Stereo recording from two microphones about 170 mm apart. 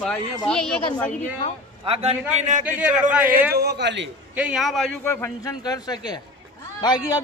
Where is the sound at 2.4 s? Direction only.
45° right (ahead or behind).